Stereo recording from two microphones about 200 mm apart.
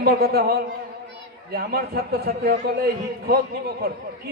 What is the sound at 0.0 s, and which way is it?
A man's voice, 50° right (ahead or behind).